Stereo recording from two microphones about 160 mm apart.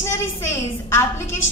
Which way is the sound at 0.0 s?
15° left (ahead or behind).